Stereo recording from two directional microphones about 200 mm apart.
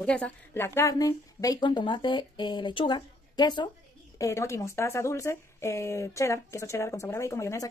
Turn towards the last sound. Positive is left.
turn(degrees=15)  # may be behind; listen again after turning